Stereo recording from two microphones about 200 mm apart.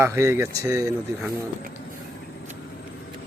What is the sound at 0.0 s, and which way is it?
Speech, 15° right (ahead or behind).